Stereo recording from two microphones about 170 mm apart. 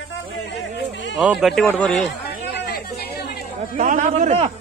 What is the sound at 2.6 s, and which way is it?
Chatter, 70° left (ahead or behind).